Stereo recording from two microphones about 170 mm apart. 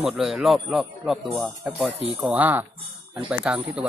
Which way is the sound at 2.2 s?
10° right (ahead or behind).